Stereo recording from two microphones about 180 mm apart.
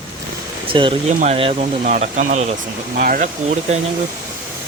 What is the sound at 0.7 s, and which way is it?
Speech, 30° right (ahead or behind).